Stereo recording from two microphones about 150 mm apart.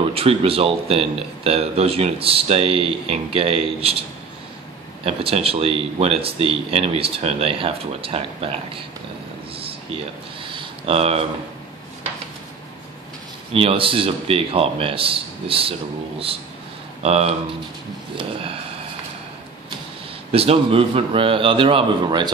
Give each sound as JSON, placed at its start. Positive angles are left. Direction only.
{"t": 0.1, "sound": "speech", "side_deg": -40}
{"t": 5.0, "sound": "speech", "side_deg": -40}
{"t": 10.4, "sound": "a sound", "side_deg": -35}
{"t": 13.5, "sound": "speech", "side_deg": -35}
{"t": 17.0, "sound": "speech", "side_deg": -40}
{"t": 20.2, "sound": "speech", "side_deg": -40}